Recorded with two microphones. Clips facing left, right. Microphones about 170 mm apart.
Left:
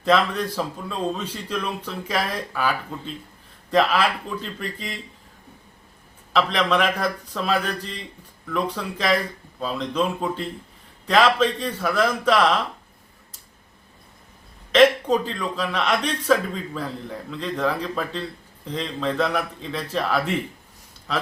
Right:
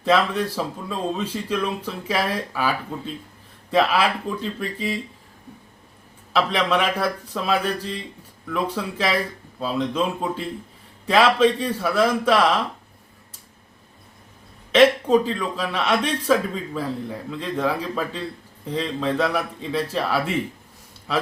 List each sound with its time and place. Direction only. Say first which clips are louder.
0.0 s speech: right 1 dB; 5° right (ahead or behind)
6.3 s speech: even; 5° right (ahead or behind)
14.7 s speech: right 1 dB; 10° right (ahead or behind)